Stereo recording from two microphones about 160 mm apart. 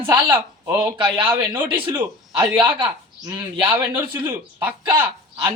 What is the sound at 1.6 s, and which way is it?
Speech, 35° right (ahead or behind).